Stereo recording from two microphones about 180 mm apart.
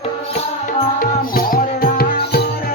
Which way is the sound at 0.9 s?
50° left (ahead or behind).